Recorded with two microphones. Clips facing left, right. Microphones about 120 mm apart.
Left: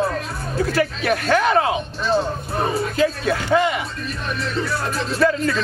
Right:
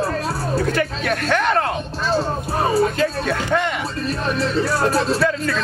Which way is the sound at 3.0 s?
5° left (ahead or behind).